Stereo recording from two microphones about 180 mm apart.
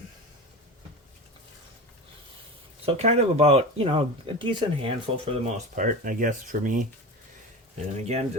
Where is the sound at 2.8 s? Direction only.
35° right (ahead or behind).